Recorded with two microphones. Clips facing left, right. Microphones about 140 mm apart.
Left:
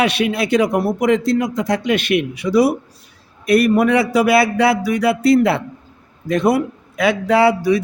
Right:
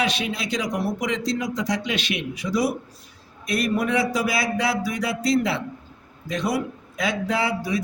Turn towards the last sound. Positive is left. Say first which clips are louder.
# left 10 dB
turn(degrees=70)  # may be behind; listen again after turning